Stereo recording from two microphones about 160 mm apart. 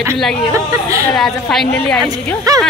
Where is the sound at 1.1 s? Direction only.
Centre (ahead or behind).